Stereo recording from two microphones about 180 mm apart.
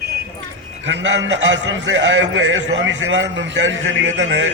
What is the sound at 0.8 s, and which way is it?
A man's voice, 85° right.